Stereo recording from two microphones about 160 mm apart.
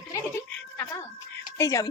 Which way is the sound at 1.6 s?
20° left (ahead or behind).